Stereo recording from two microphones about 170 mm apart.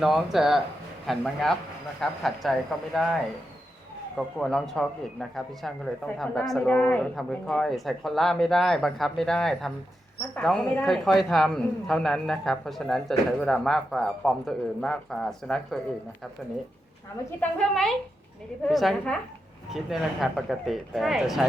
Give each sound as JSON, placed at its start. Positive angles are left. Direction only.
{"t": 0.0, "sound": "a man's voice", "side_deg": 0}
{"t": 4.4, "sound": "a man's voice", "side_deg": 5}
{"t": 17.6, "sound": "a man's voice", "side_deg": 5}